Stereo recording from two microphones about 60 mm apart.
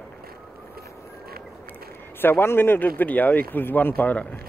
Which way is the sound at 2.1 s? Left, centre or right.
Left.